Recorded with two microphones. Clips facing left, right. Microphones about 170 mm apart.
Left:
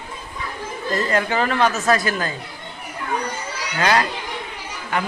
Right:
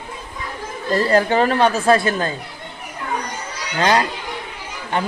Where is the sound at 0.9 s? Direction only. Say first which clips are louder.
Right 5 dB; 35° right (ahead or behind).